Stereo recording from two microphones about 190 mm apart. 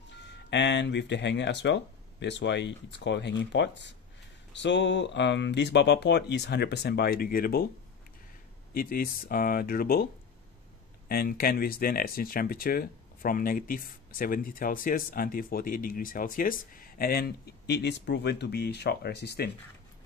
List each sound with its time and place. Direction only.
0.2 s speech: 65° left (ahead or behind); by 7.6 s 50° left (ahead or behind)
8.7 s speech: 50° left (ahead or behind)
11.1 s speech: 50° left (ahead or behind)